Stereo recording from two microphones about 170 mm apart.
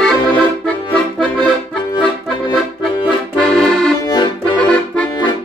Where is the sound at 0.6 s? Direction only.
5° left (ahead or behind).